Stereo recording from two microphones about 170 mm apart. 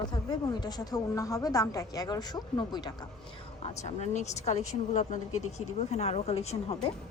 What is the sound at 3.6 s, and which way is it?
A woman's voice, 40° left (ahead or behind).